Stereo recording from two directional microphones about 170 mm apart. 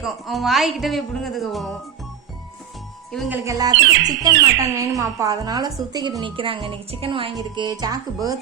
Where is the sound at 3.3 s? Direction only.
20° right (ahead or behind).